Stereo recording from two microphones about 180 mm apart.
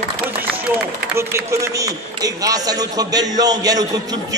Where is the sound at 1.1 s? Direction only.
15° right (ahead or behind).